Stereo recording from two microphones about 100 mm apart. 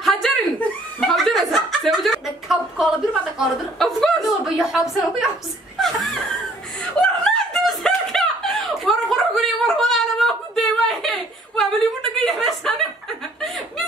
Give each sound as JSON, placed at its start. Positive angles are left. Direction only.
{"t": 0.0, "sound": "chuckle", "side_deg": 0}
{"t": 5.8, "sound": "whimper", "side_deg": 0}
{"t": 6.8, "sound": "snicker", "side_deg": 10}
{"t": 12.2, "sound": "a sound", "side_deg": 0}